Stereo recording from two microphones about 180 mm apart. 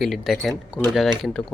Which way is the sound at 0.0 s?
Centre (ahead or behind).